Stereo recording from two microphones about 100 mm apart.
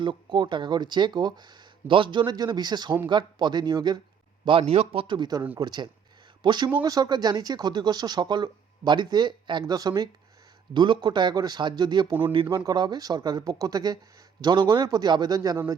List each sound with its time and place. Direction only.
0.0 s speech: 55° right (ahead or behind)
4.4 s speech: 75° right (ahead or behind); by 10.1 s 40° right (ahead or behind)
10.8 s speech: 50° right (ahead or behind)